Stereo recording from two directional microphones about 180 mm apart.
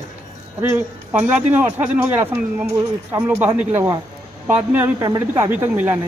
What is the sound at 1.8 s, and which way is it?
A man's voice, 10° right (ahead or behind).